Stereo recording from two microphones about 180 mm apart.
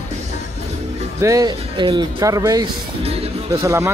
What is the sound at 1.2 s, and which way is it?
Speech, 20° right (ahead or behind).